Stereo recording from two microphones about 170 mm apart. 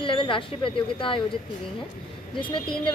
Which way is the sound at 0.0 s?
30° left (ahead or behind).